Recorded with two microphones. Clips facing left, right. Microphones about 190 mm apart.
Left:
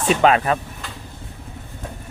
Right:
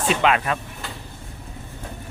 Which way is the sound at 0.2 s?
35° left (ahead or behind).